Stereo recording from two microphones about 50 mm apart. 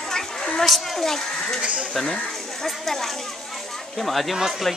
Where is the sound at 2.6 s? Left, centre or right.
Centre.